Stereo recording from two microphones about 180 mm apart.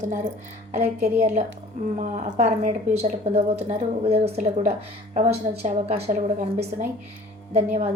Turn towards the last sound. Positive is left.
turn(degrees=-35)  # may be behind; listen again after turning